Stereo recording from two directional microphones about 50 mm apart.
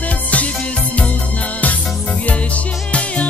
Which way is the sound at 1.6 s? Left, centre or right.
Left.